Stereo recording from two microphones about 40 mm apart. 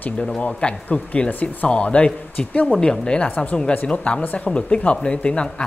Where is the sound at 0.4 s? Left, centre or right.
Left.